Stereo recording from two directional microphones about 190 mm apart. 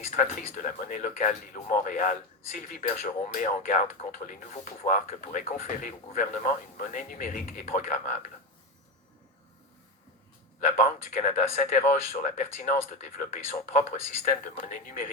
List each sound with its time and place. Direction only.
0.0 s speech: 40° left (ahead or behind)
10.6 s speech: 35° left (ahead or behind)